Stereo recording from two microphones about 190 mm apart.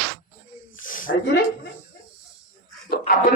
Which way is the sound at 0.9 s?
45° left (ahead or behind).